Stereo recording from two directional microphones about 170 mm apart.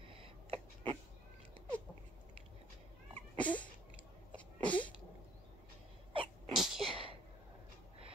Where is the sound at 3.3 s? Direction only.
10° left (ahead or behind).